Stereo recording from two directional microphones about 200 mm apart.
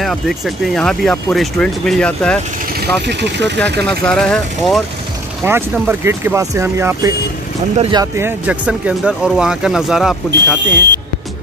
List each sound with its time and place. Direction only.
0.0 s speech: centre (ahead or behind)
3.1 s speech: 60° right (ahead or behind)
4.0 s speech: 5° left (ahead or behind)
5.4 s speech: 10° right (ahead or behind)
7.7 s speech: 30° right (ahead or behind)
8.0 s speech: 10° right (ahead or behind)
10.3 s speech: 60° right (ahead or behind)